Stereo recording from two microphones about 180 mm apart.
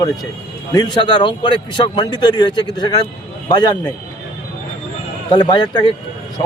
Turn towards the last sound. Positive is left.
turn(degrees=25)  # may be behind; listen again after turning